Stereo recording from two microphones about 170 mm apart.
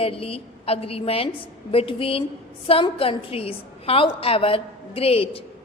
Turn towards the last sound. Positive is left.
turn(degrees=35)  # may be behind; listen again after turning